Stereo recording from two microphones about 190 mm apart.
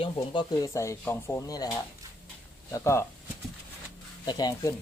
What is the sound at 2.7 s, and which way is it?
Speech, 15° left (ahead or behind).